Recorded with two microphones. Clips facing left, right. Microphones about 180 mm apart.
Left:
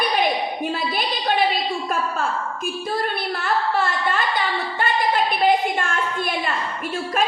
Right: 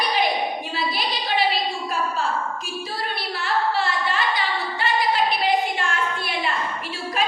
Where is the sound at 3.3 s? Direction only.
50° left (ahead or behind).